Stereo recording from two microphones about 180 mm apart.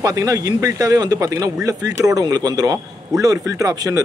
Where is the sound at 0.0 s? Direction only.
20° right (ahead or behind).